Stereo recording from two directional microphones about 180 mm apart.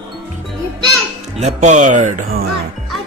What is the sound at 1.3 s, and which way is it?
Speech, 40° right (ahead or behind).